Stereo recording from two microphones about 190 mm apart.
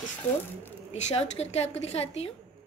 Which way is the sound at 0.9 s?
35° left (ahead or behind).